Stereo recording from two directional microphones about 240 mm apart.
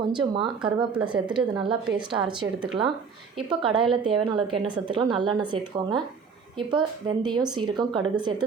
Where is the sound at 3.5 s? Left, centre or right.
Right.